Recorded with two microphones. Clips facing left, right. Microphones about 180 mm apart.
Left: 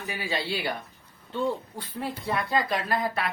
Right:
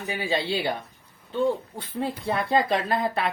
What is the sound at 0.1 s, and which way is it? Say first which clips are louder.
Speech: right 4 dB; 25° right (ahead or behind).